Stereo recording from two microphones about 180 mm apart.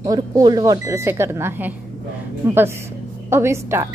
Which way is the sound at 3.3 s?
15° right (ahead or behind).